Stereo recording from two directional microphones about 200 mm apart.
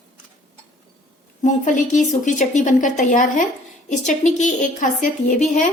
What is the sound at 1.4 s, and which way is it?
A woman's voice, 40° left (ahead or behind).